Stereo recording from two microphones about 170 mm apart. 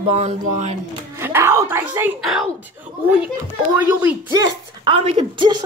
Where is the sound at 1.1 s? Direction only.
15° right (ahead or behind).